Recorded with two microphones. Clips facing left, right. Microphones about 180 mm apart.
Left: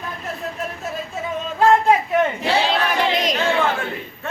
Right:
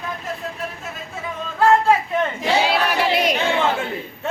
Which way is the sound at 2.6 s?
10° right (ahead or behind).